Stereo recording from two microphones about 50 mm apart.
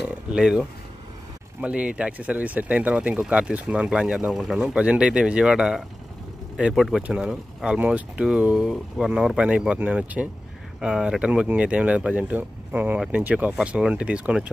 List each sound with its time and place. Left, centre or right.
0.0 s speech: centre
1.6 s speech: right; by 4.7 s centre
4.7 s speech: right
6.7 s speech: centre
7.0 s speech: right
7.2 s speech: centre
7.8 s speech: right
8.5 s speech: centre
9.8 s speech: right
10.8 s speech: centre; by 13.6 s right
13.7 s speech: right